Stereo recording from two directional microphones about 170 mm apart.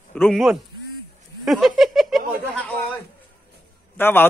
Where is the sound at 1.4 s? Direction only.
Centre (ahead or behind).